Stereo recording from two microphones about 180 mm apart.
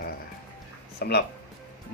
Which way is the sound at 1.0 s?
65° left (ahead or behind).